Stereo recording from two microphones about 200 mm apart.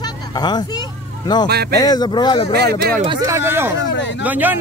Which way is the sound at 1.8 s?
20° left (ahead or behind).